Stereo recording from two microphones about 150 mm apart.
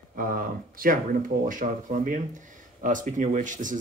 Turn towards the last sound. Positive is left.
turn(degrees=-60)  # may be behind; listen again after turning